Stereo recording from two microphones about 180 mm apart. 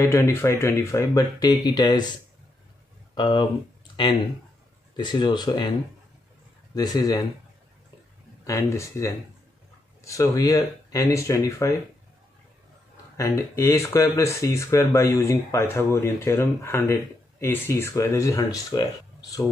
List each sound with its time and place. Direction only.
0.0 s speech: 15° left (ahead or behind)
3.2 s speech: 25° left (ahead or behind)
6.7 s speech: 20° left (ahead or behind)
8.5 s speech: 15° left (ahead or behind)
13.2 s speech: 15° left (ahead or behind)